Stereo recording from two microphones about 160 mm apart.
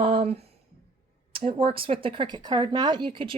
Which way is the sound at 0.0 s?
35° right (ahead or behind).